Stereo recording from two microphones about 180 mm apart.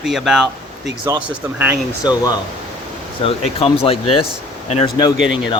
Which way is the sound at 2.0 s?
20° left (ahead or behind).